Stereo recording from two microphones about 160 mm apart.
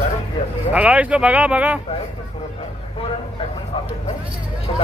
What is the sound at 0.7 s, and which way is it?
Speech, 10° right (ahead or behind).